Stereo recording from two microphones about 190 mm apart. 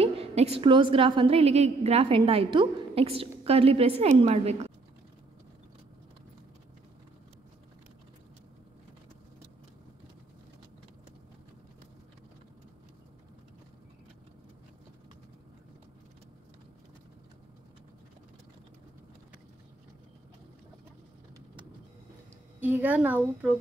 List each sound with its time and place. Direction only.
0.0 s a woman's voice: 30° right (ahead or behind)
22.6 s a woman's voice: 10° right (ahead or behind)